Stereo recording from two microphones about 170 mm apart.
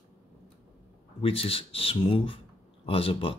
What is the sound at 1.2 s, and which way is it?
Speech, 35° left (ahead or behind).